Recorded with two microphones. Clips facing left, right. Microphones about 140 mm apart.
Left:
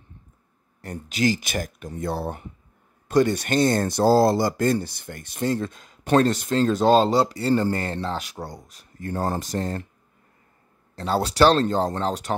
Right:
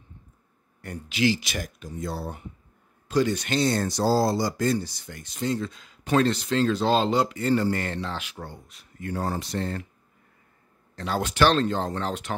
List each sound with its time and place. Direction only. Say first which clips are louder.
0.7 s speech: left 1 dB; 40° left (ahead or behind)
11.0 s speech: left 4 dB; 35° left (ahead or behind)